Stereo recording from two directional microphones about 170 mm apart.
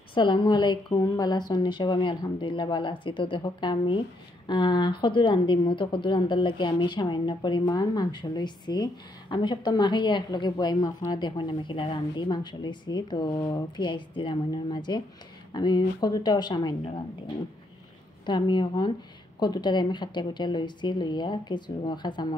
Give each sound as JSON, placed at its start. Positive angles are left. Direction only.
{"t": 0.1, "sound": "a woman's voice", "side_deg": 30}
{"t": 18.2, "sound": "a woman's voice", "side_deg": 25}